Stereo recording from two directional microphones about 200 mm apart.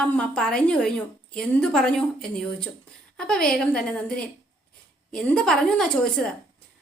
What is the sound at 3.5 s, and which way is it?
A woman's voice, 5° left (ahead or behind).